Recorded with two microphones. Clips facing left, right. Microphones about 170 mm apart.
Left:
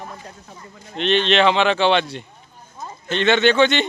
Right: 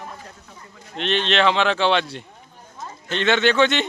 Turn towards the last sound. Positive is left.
turn(degrees=0)  # may be behind; listen again after turning